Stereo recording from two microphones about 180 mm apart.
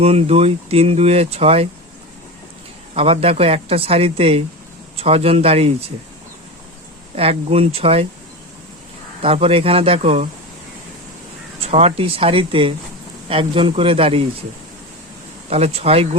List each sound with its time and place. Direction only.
0.0 s speech: 35° right (ahead or behind)
2.9 s speech: 30° right (ahead or behind)
7.2 s speech: 35° right (ahead or behind)
9.2 s speech: 35° right (ahead or behind)
11.6 s speech: 35° right (ahead or behind)
15.4 s speech: 35° right (ahead or behind)